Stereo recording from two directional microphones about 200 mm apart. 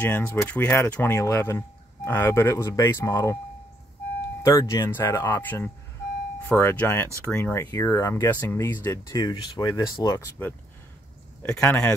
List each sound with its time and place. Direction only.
0.0 s speech: 10° left (ahead or behind)
4.5 s speech: 15° left (ahead or behind)
11.4 s speech: 5° left (ahead or behind)